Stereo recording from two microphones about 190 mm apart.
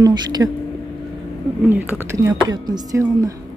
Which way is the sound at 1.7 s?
10° right (ahead or behind).